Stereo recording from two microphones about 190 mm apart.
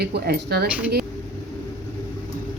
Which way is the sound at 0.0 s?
60° right (ahead or behind).